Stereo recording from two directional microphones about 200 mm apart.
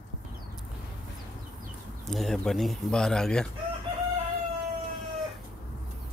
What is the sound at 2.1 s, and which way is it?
Speech, centre (ahead or behind).